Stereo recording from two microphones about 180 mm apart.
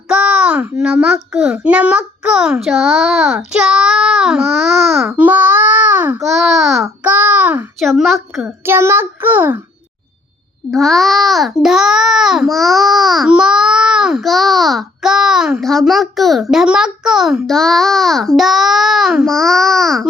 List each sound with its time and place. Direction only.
0.1 s a child's voice: 5° right (ahead or behind)
2.6 s child singing: centre (ahead or behind)
6.2 s a child's voice: centre (ahead or behind)
6.8 s child singing: 10° right (ahead or behind)
7.8 s a child's voice: centre (ahead or behind)
10.7 s a child's voice: centre (ahead or behind)